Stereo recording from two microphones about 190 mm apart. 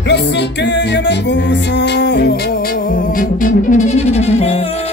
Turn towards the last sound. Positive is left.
turn(degrees=35)  # may be behind; listen again after turning